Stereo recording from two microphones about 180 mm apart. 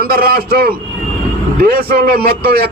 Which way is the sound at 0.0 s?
55° right (ahead or behind).